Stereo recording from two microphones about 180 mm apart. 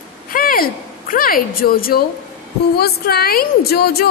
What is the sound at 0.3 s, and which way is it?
A woman's voice, 55° left (ahead or behind).